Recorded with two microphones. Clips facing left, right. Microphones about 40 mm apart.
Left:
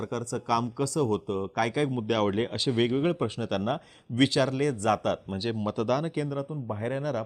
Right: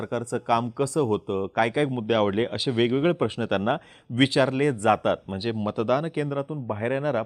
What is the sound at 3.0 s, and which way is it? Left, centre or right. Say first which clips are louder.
Speech: right 4 dB; right.